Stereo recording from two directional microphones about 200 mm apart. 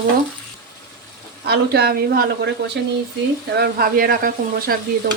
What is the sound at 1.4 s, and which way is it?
A woman's voice, 55° right (ahead or behind).